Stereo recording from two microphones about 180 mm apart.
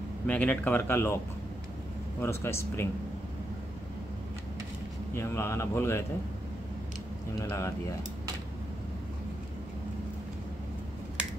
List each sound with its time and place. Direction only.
0.3 s speech: 10° left (ahead or behind)
5.1 s speech: 15° left (ahead or behind)
7.3 s speech: 15° left (ahead or behind)